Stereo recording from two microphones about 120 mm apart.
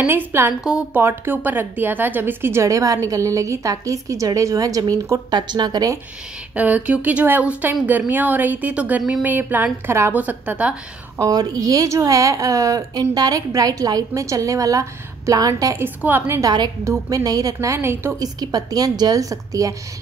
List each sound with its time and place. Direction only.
0.0 s a woman's voice: 20° right (ahead or behind)
0.7 s a woman's voice: 5° right (ahead or behind)
1.0 s a woman's voice: 15° right (ahead or behind); by 5.9 s 35° right (ahead or behind)
6.5 s a woman's voice: 10° right (ahead or behind)
11.1 s a woman's voice: 30° right (ahead or behind)
15.8 s a woman's voice: 15° right (ahead or behind)
16.3 s a woman's voice: 35° right (ahead or behind)